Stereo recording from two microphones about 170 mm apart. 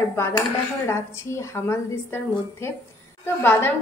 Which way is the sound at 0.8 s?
15° left (ahead or behind).